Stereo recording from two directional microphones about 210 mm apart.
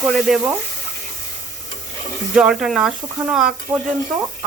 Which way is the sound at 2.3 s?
5° right (ahead or behind).